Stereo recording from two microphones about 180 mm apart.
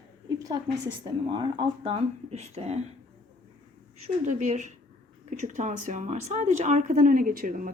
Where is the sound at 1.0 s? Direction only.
25° right (ahead or behind).